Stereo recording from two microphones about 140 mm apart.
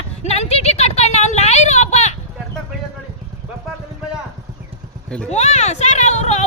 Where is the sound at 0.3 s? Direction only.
50° left (ahead or behind).